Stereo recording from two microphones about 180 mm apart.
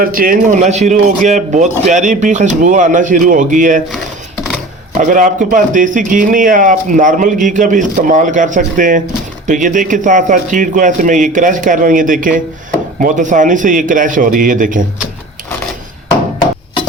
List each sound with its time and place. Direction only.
0.0 s speech: 50° right (ahead or behind)
4.9 s speech: 45° right (ahead or behind)